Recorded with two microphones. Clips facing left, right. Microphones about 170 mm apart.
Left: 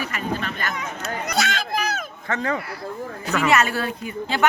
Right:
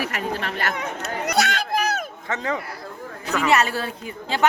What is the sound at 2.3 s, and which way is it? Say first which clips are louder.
Speech: left 2 dB; 20° right (ahead or behind).